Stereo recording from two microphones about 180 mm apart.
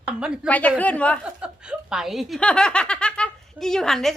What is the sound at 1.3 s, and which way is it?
Speech, 5° right (ahead or behind).